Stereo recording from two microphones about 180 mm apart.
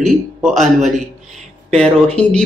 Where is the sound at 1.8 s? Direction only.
35° right (ahead or behind).